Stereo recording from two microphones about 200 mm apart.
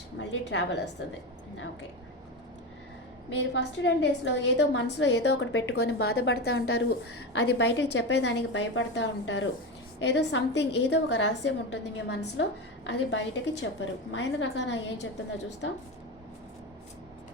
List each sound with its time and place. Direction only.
0.2 s a woman's voice: 65° left (ahead or behind)
3.3 s a woman's voice: 60° left (ahead or behind)